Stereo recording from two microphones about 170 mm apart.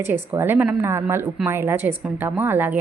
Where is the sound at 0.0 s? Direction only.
15° right (ahead or behind).